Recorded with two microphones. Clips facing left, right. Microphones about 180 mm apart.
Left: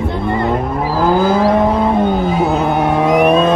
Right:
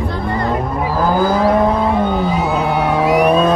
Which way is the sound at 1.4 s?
10° left (ahead or behind).